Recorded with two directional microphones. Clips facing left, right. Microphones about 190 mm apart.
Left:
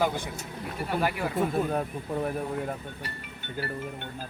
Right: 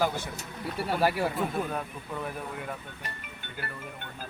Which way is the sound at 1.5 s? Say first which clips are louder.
Left 4 dB; 35° left (ahead or behind).